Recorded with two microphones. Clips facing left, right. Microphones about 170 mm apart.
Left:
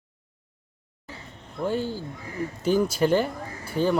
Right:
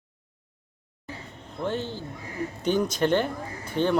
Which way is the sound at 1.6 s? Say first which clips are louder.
Left 3 dB; 10° left (ahead or behind).